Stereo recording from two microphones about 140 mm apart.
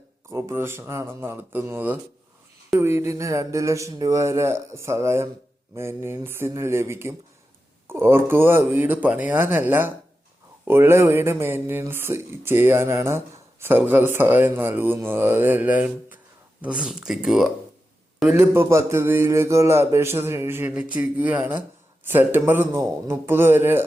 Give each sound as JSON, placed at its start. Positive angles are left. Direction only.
{"t": 0.3, "sound": "speech", "side_deg": -20}
{"t": 18.3, "sound": "speech", "side_deg": -15}